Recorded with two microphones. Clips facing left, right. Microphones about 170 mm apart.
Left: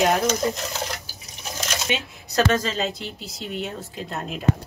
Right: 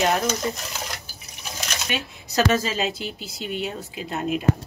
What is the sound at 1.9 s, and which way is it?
Speech, 20° left (ahead or behind).